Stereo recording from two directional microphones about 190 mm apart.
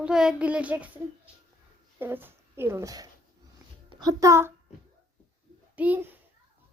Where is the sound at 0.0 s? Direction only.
5° right (ahead or behind).